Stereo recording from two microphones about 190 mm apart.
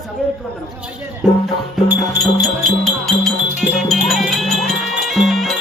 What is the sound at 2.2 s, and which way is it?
Music, centre (ahead or behind).